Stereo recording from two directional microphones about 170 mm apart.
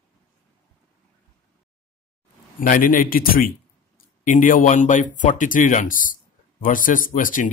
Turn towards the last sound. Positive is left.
turn(degrees=50)  # may be behind; listen again after turning